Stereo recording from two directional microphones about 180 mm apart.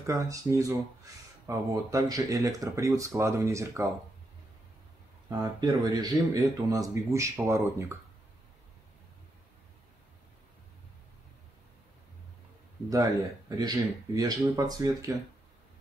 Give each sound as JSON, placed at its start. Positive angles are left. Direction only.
{"t": 0.0, "sound": "speech", "side_deg": -15}
{"t": 5.3, "sound": "speech", "side_deg": -20}
{"t": 12.9, "sound": "speech", "side_deg": -20}